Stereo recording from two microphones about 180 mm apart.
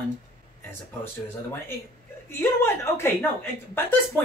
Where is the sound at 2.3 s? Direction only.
15° left (ahead or behind).